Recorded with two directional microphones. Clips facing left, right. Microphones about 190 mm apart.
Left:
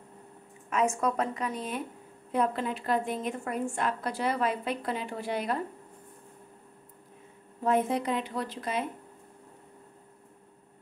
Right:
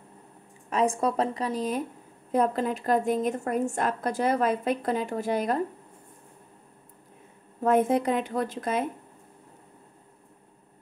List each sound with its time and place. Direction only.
0.7 s a woman's voice: 30° right (ahead or behind)
7.6 s a woman's voice: 50° right (ahead or behind)